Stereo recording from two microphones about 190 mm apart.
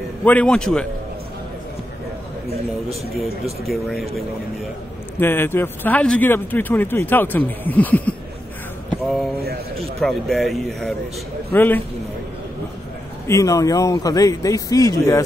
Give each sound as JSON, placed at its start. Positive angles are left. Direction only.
{"t": 0.2, "sound": "speech", "side_deg": 10}
{"t": 3.6, "sound": "speech", "side_deg": 0}
{"t": 5.2, "sound": "speech", "side_deg": 10}
{"t": 9.0, "sound": "a sound", "side_deg": 0}
{"t": 9.9, "sound": "speech", "side_deg": 0}
{"t": 13.3, "sound": "speech", "side_deg": 15}